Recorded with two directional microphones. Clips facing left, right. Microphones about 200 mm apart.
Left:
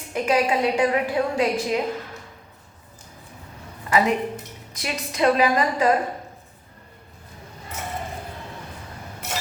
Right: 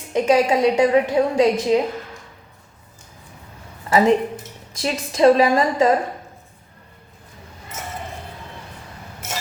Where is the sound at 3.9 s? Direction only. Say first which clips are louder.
Right 5 dB; 30° right (ahead or behind).